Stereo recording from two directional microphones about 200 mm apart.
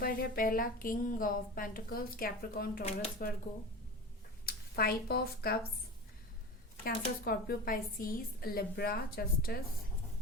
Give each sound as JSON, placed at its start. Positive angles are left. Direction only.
{"t": 0.0, "sound": "a woman's voice", "side_deg": 45}
{"t": 4.4, "sound": "speech", "side_deg": 50}
{"t": 6.8, "sound": "a woman's voice", "side_deg": 50}